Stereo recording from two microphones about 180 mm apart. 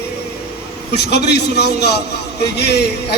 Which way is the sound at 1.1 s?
65° left (ahead or behind).